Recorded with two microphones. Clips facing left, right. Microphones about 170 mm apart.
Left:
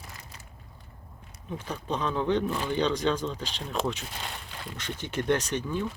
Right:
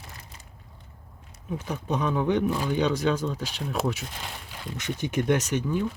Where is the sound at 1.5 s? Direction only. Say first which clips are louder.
Right 3 dB; 10° right (ahead or behind).